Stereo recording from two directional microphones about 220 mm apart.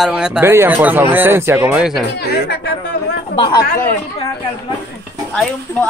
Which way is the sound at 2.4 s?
50° left (ahead or behind).